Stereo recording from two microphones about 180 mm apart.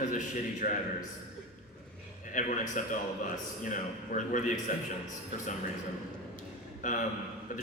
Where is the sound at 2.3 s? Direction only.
45° left (ahead or behind).